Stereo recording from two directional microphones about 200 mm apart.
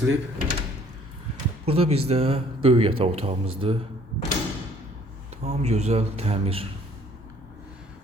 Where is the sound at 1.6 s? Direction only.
30° right (ahead or behind).